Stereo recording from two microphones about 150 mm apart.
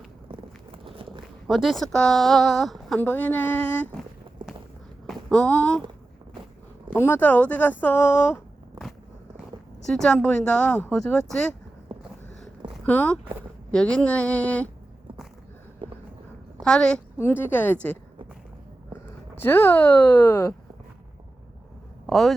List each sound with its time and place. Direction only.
0.9 s walk: 35° right (ahead or behind)
1.5 s speech: centre (ahead or behind)
3.0 s speech: 10° left (ahead or behind)
5.0 s speech: 5° left (ahead or behind)
6.9 s speech: 15° left (ahead or behind)
9.8 s speech: 5° left (ahead or behind)
12.8 s speech: 10° left (ahead or behind)
15.8 s walk: 35° right (ahead or behind)
16.6 s speech: 5° left (ahead or behind)
19.4 s speech: 15° left (ahead or behind)
22.0 s a sound: centre (ahead or behind)